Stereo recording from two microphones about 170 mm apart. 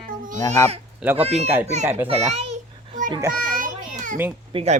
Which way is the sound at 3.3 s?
50° right (ahead or behind).